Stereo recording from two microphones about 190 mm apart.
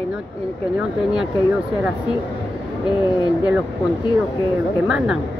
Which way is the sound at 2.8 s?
20° left (ahead or behind).